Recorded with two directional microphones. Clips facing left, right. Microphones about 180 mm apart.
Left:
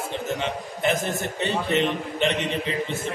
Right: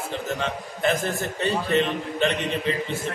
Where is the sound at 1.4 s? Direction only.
20° left (ahead or behind).